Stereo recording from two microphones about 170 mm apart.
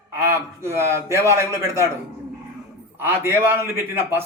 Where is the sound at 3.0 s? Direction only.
15° right (ahead or behind).